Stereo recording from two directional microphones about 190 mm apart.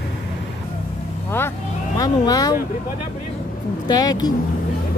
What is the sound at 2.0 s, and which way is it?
Speech, 20° left (ahead or behind).